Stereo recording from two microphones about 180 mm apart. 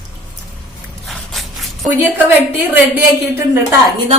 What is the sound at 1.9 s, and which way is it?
A woman's voice, 10° right (ahead or behind).